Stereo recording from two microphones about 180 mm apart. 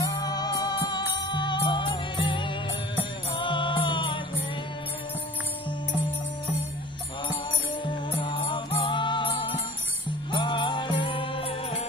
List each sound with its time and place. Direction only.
0.0 s music: 20° left (ahead or behind)
7.8 s music: 25° left (ahead or behind)